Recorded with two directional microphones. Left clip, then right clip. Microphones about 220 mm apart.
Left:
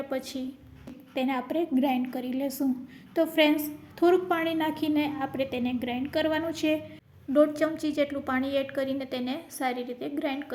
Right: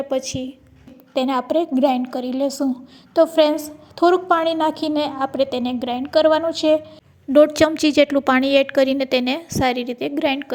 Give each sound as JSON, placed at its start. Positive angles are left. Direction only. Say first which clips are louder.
{"t": 0.1, "sound": "a woman's voice", "louder": "right 10 dB", "side_deg": -25}
{"t": 4.4, "sound": "a woman's voice", "louder": "right 9 dB", "side_deg": -5}
{"t": 4.6, "sound": "a woman's voice", "louder": "right 8 dB", "side_deg": -30}
{"t": 4.9, "sound": "a woman's voice", "louder": "right 9 dB", "side_deg": -5}
{"t": 6.3, "sound": "a woman's voice", "louder": "right 11 dB", "side_deg": -25}
{"t": 7.3, "sound": "a woman's voice", "louder": "right 10 dB", "side_deg": -35}